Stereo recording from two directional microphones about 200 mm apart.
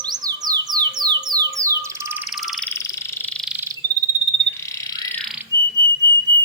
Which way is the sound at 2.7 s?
15° left (ahead or behind).